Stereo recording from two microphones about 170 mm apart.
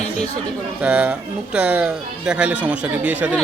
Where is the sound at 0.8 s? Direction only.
5° right (ahead or behind).